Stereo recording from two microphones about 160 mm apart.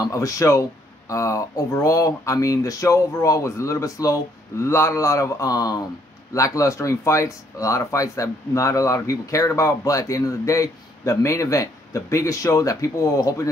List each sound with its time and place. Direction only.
0.0 s speech: 20° left (ahead or behind)